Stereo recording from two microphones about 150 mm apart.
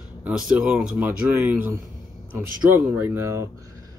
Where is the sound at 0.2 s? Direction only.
5° right (ahead or behind).